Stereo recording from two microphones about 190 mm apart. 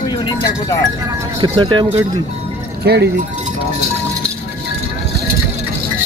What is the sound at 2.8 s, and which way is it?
Speech, 60° right (ahead or behind).